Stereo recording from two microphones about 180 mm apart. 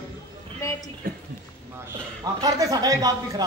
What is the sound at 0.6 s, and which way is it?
Speech, 15° left (ahead or behind).